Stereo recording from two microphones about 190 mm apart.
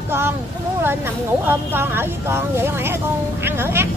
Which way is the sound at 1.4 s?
10° right (ahead or behind).